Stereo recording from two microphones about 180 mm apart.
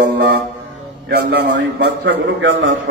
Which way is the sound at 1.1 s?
65° right (ahead or behind).